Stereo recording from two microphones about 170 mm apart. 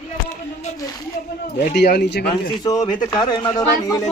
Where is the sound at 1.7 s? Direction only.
75° left (ahead or behind).